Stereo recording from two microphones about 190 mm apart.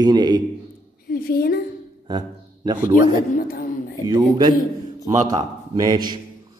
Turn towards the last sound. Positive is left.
turn(degrees=-20)  # may be behind; listen again after turning